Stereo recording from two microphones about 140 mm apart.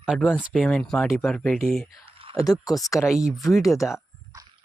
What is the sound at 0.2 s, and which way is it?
Speech, 10° left (ahead or behind).